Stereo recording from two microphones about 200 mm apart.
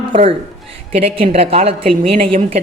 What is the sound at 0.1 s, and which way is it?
A woman's voice, 30° right (ahead or behind).